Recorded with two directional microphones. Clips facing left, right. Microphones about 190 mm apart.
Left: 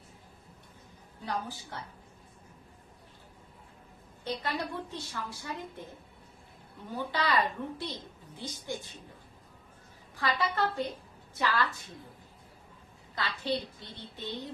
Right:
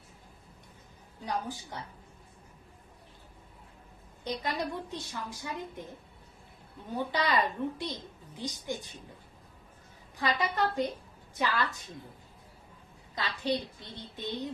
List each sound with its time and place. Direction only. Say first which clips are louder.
1.2 s a woman's voice: right 1 dB; 15° right (ahead or behind)
4.2 s a woman's voice: right 1 dB; 15° right (ahead or behind)
6.9 s a woman's voice: right 1 dB; 20° right (ahead or behind)
10.2 s a woman's voice: right 1 dB; 20° right (ahead or behind)
13.1 s a woman's voice: right 1 dB; 15° right (ahead or behind)